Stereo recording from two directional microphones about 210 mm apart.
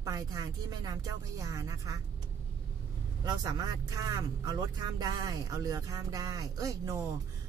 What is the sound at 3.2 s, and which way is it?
A man's voice, 20° right (ahead or behind).